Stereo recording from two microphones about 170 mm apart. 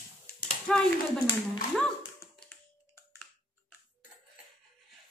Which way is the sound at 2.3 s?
5° left (ahead or behind).